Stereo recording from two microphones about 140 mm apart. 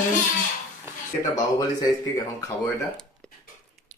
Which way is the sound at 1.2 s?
30° left (ahead or behind).